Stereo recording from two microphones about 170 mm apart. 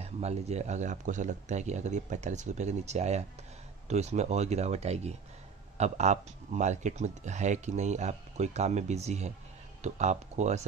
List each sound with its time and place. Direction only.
0.0 s speech: 40° right (ahead or behind)